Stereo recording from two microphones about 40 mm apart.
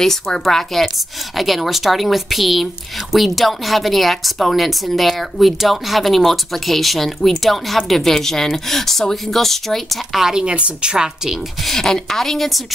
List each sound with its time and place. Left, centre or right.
0.0 s a woman's voice: centre
10.1 s speech: centre
10.4 s a woman's voice: right
11.6 s a woman's voice: centre